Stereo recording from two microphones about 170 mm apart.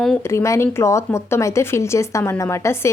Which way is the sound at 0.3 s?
15° left (ahead or behind).